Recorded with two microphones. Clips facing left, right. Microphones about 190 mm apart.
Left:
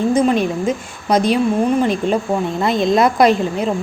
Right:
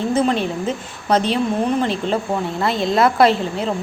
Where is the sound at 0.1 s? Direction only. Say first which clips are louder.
Left 1 dB; 15° left (ahead or behind).